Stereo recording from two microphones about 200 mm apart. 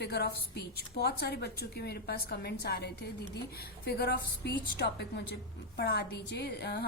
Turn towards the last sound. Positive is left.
turn(degrees=55)  # may be behind; listen again after turning